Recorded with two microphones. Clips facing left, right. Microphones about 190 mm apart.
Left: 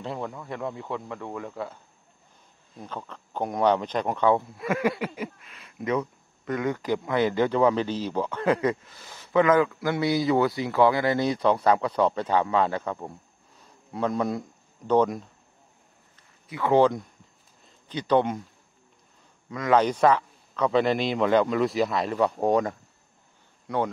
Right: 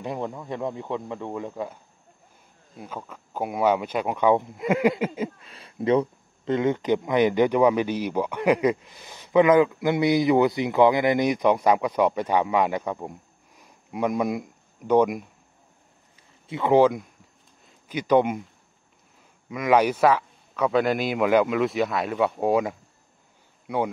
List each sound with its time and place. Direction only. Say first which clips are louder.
0.0 s speech: right 3 dB; 15° right (ahead or behind)
2.8 s speech: right 1 dB; 10° right (ahead or behind)
16.4 s speech: right 2 dB; 25° right (ahead or behind)
16.7 s speech: right 2 dB; 10° right (ahead or behind)
19.5 s a man's voice: right 2 dB; 10° right (ahead or behind)